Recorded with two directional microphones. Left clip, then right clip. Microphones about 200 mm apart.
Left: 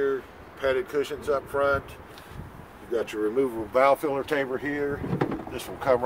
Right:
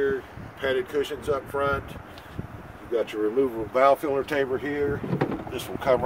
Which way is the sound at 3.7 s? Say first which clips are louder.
Right 1 dB; 35° left (ahead or behind).